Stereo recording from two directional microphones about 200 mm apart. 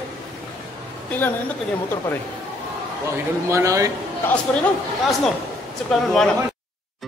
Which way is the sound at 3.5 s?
15° right (ahead or behind).